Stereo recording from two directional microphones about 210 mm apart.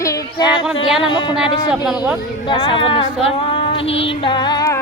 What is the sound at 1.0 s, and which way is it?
Speech, 25° left (ahead or behind).